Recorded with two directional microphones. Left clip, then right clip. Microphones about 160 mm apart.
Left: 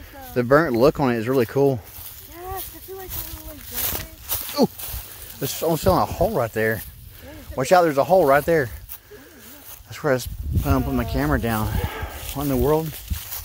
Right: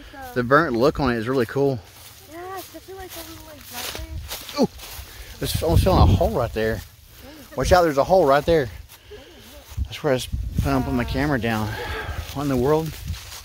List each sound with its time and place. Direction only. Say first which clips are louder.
0.3 s speech: left 1 dB; 10° left (ahead or behind)
3.7 s a sound: left 1 dB; 90° left
4.6 s speech: left 2 dB; 10° left (ahead or behind)
8.3 s speech: even; centre (ahead or behind)
9.8 s speech: even; centre (ahead or behind)
13.1 s a sound: left 1 dB; 90° left